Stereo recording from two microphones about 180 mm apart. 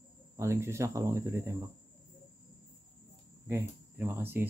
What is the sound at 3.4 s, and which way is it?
Speech, 15° right (ahead or behind).